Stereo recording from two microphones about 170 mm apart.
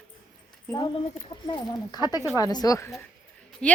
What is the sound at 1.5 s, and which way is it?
A woman's voice, 25° left (ahead or behind).